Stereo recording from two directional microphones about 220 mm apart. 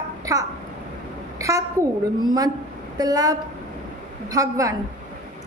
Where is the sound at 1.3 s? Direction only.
15° right (ahead or behind).